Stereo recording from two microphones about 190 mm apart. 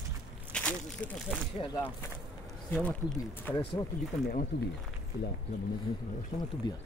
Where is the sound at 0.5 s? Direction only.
5° left (ahead or behind).